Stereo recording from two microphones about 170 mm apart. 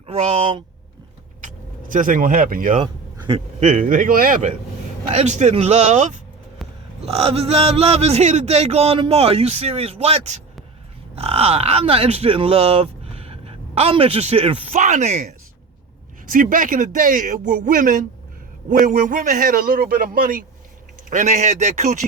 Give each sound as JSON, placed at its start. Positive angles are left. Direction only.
{"t": 0.1, "sound": "a man's voice", "side_deg": -40}
{"t": 1.4, "sound": "vehicle", "side_deg": -50}
{"t": 2.7, "sound": "a sound", "side_deg": -35}
{"t": 3.6, "sound": "a man's voice", "side_deg": -50}
{"t": 6.6, "sound": "burping", "side_deg": 0}
{"t": 7.0, "sound": "a man's voice", "side_deg": -35}
{"t": 16.2, "sound": "speech", "side_deg": -55}